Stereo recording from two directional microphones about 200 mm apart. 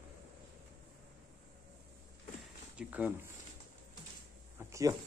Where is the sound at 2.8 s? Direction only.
5° right (ahead or behind).